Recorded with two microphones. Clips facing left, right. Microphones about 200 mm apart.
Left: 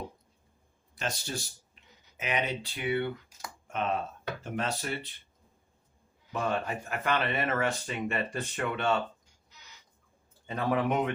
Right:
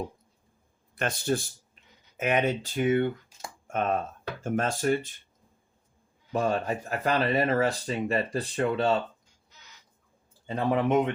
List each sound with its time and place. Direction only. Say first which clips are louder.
0.9 s speech: right 8 dB; 55° right (ahead or behind)
3.2 s a sound: right 2 dB; 25° right (ahead or behind)
3.7 s speech: right 4 dB; 50° right (ahead or behind)
6.3 s speech: right 4 dB; 40° right (ahead or behind)
10.4 s speech: right 3 dB; 30° right (ahead or behind)